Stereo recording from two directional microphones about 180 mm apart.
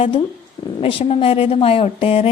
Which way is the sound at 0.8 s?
30° left (ahead or behind).